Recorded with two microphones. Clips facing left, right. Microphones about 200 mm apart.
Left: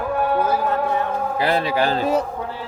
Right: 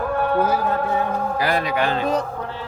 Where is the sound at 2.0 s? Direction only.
10° left (ahead or behind).